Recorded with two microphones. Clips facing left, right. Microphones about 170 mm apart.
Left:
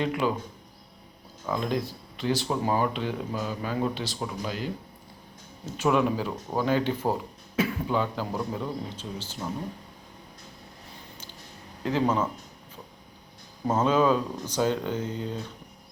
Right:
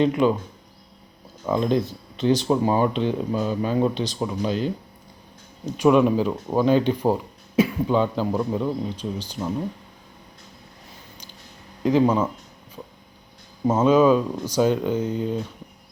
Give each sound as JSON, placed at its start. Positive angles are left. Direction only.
{"t": 0.0, "sound": "speech", "side_deg": -25}
{"t": 1.5, "sound": "speech", "side_deg": -25}
{"t": 11.8, "sound": "speech", "side_deg": -15}
{"t": 13.7, "sound": "speech", "side_deg": -10}